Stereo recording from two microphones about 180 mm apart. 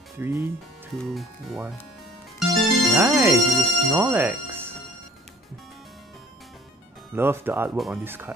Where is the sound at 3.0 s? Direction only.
10° right (ahead or behind).